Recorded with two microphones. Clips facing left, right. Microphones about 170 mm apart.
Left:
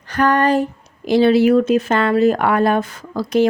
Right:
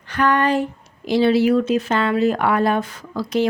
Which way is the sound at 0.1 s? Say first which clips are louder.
Left 3 dB; 40° left (ahead or behind).